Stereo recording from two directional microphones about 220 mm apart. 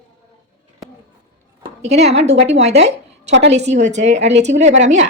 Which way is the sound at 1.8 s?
30° right (ahead or behind).